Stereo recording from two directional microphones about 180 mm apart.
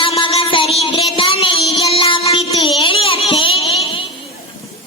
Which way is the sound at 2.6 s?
30° left (ahead or behind).